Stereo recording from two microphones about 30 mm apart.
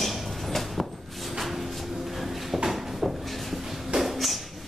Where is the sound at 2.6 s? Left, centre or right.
Centre.